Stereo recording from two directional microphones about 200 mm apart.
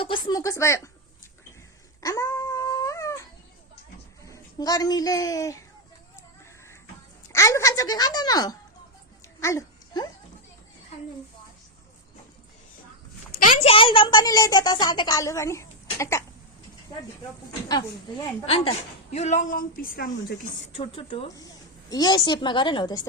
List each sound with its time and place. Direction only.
0.0 s a woman's voice: 20° left (ahead or behind)
2.0 s dog: 15° left (ahead or behind)
4.2 s speech: 15° left (ahead or behind)
6.1 s a sound: 15° left (ahead or behind)
7.3 s a woman's voice: 15° left (ahead or behind)
9.4 s a sound: 15° left (ahead or behind)
13.7 s a woman's voice: 25° left (ahead or behind)
17.7 s a woman's voice: 20° left (ahead or behind); by 20.5 s 45° left (ahead or behind)
20.7 s a woman's voice: 30° left (ahead or behind)
21.3 s a woman's voice: 20° left (ahead or behind)